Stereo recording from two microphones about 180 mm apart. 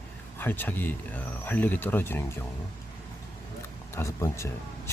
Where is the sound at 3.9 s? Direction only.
15° left (ahead or behind).